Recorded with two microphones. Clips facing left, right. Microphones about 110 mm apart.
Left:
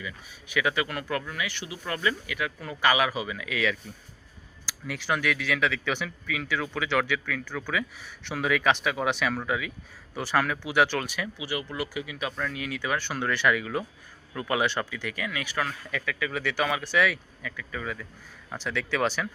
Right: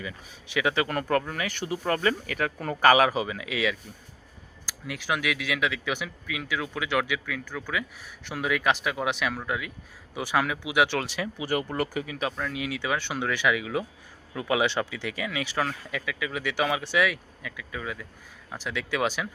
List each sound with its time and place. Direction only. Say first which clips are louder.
0.0 s speech: right 1 dB; 30° right (ahead or behind)
4.9 s speech: left 1 dB; 10° right (ahead or behind)
10.2 s speech: even; 15° right (ahead or behind)
11.4 s speech: right 6 dB; 50° right (ahead or behind)
12.4 s speech: right 1 dB; 20° right (ahead or behind)
17.0 s speech: even; 10° right (ahead or behind)